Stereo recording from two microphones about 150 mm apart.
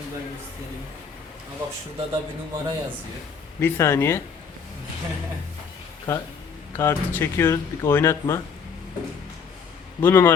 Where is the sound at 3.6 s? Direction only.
15° left (ahead or behind).